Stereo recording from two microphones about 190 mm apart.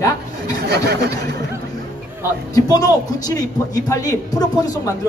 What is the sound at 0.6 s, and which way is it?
Speech, 60° right (ahead or behind).